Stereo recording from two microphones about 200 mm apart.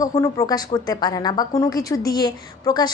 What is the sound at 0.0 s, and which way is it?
A woman's voice, 15° left (ahead or behind).